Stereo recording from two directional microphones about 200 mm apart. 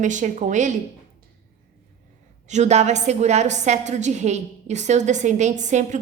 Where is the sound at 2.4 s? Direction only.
35° right (ahead or behind).